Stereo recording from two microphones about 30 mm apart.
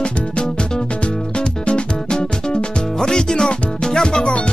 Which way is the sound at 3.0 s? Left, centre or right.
Left.